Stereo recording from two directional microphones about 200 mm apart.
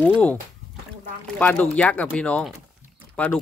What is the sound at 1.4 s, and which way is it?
Speech, 5° left (ahead or behind).